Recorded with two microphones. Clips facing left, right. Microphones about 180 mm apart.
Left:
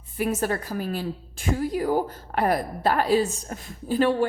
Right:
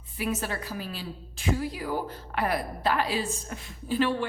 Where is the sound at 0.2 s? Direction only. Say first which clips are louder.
Left 6 dB; 50° left (ahead or behind).